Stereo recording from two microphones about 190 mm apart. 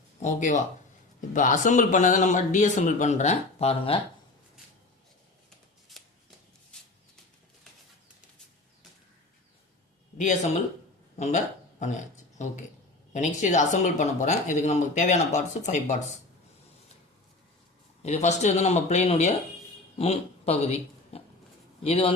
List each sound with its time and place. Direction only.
0.2 s speech: 40° left (ahead or behind)
5.9 s shuffling cards: centre (ahead or behind)
6.7 s a sound: 5° left (ahead or behind)
10.2 s speech: 40° left (ahead or behind)
11.8 s speech: 40° left (ahead or behind)
18.0 s speech: 35° left (ahead or behind)